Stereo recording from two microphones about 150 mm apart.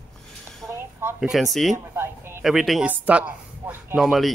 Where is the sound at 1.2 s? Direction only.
Centre (ahead or behind).